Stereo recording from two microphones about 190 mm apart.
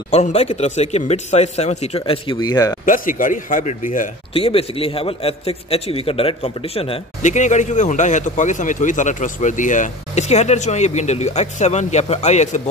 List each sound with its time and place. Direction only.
0.1 s a man's voice: 35° left (ahead or behind); by 2.8 s 20° left (ahead or behind)
2.8 s a man's voice: 45° left (ahead or behind)
4.3 s a man's voice: 30° left (ahead or behind)